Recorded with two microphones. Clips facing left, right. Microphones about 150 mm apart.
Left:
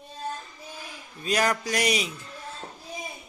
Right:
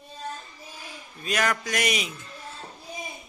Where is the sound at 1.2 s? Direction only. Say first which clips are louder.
Left 2 dB; 35° left (ahead or behind).